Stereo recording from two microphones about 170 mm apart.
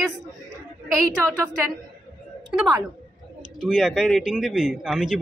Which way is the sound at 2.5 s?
5° right (ahead or behind).